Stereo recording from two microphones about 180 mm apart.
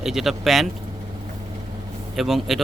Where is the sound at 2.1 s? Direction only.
Centre (ahead or behind).